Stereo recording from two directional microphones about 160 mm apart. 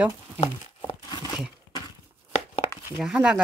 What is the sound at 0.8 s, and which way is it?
Crumpling, 25° left (ahead or behind).